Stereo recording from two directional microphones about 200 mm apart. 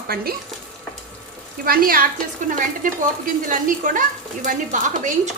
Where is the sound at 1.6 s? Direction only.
45° right (ahead or behind).